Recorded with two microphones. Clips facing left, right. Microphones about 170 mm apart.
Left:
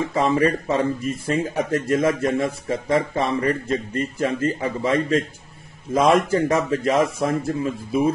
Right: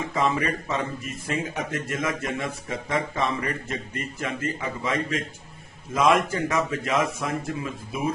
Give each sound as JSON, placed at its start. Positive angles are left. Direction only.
{"t": 0.1, "sound": "speech", "side_deg": 30}